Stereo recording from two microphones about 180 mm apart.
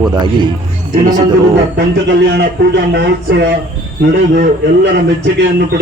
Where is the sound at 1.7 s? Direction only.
70° right (ahead or behind).